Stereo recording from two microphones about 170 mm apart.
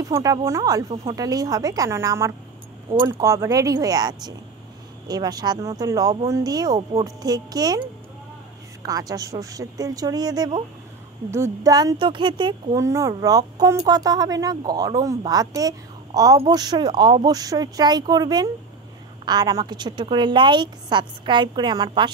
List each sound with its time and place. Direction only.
0.0 s a woman's voice: 20° right (ahead or behind)
8.8 s a woman's voice: 20° right (ahead or behind)